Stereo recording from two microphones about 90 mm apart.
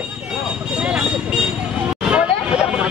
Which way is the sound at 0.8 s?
10° right (ahead or behind).